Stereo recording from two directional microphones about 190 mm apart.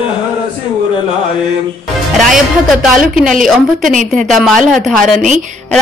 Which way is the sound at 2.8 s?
Centre (ahead or behind).